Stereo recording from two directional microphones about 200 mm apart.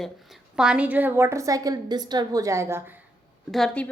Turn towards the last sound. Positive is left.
turn(degrees=5)  # may be behind; listen again after turning